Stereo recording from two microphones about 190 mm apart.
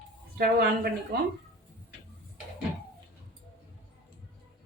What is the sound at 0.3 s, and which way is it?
Speech, 55° right (ahead or behind).